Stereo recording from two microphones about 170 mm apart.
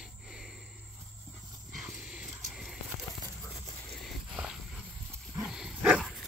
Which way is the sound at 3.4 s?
25° left (ahead or behind).